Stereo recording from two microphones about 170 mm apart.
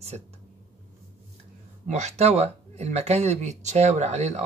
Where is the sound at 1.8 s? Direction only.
40° right (ahead or behind).